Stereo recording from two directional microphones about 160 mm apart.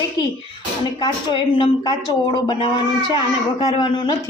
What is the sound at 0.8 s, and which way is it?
Speech, 25° left (ahead or behind).